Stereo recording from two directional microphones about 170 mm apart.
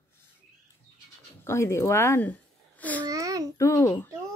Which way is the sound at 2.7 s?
10° left (ahead or behind).